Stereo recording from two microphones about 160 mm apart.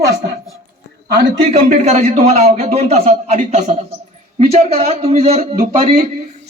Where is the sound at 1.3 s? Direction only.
40° right (ahead or behind).